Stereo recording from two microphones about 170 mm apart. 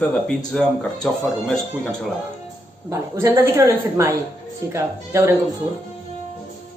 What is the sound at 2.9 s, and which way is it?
Speech, 15° right (ahead or behind).